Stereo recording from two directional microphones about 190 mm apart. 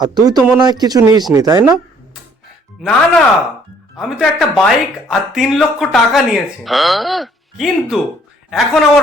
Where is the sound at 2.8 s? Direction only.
Centre (ahead or behind).